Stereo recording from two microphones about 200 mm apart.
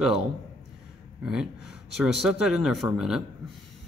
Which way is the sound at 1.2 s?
5° right (ahead or behind).